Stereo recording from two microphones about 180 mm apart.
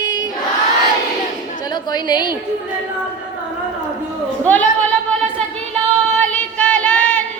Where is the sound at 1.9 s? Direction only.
25° left (ahead or behind).